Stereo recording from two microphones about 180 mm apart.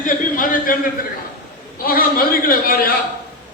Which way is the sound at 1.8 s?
55° left (ahead or behind).